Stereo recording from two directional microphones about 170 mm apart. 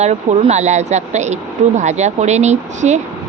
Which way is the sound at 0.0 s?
40° right (ahead or behind).